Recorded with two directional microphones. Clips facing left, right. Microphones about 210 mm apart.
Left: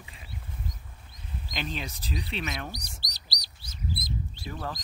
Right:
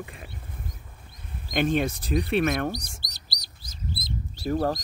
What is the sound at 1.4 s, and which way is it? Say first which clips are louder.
Speech: right 12 dB; 55° right (ahead or behind).